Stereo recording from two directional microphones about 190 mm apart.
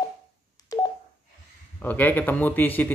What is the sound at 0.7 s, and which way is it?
Telephone dialing, 20° left (ahead or behind).